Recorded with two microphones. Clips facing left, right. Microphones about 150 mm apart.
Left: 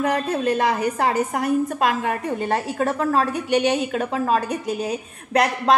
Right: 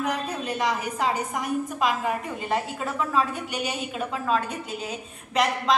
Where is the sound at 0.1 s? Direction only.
90° left.